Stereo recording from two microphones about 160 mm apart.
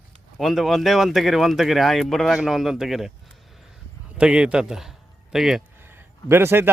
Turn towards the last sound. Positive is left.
turn(degrees=-15)  # may be behind; listen again after turning